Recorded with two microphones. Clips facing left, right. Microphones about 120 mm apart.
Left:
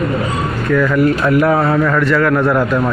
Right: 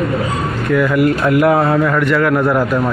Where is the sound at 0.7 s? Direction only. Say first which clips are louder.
Even; 15° right (ahead or behind).